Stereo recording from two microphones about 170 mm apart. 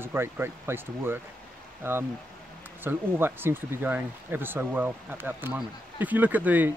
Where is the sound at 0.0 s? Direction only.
15° right (ahead or behind).